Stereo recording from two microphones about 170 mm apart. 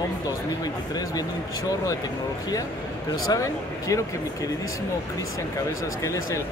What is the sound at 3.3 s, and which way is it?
Speech, 20° left (ahead or behind).